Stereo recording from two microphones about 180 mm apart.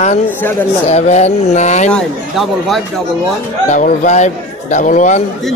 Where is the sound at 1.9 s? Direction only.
Centre (ahead or behind).